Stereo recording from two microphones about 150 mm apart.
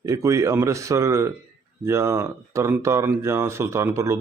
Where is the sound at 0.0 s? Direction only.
20° right (ahead or behind).